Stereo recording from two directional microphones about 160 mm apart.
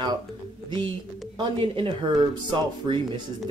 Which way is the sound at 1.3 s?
30° right (ahead or behind).